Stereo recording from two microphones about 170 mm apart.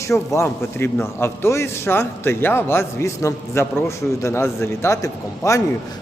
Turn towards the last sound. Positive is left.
turn(degrees=20)  # may be behind; listen again after turning